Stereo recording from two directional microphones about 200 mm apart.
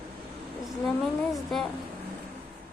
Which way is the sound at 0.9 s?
Centre (ahead or behind).